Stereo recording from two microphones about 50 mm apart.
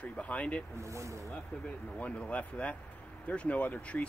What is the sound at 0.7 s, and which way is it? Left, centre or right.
Speech, right.